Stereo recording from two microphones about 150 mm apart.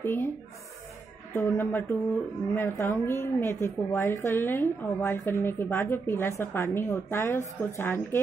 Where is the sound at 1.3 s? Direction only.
10° left (ahead or behind).